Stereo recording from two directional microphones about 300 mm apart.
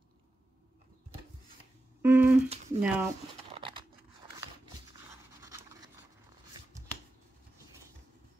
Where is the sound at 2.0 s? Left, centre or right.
Centre.